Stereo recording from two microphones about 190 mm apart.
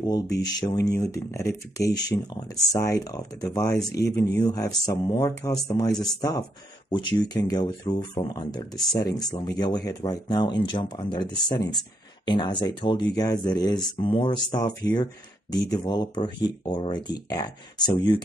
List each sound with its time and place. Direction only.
0.0 s speech: 20° left (ahead or behind)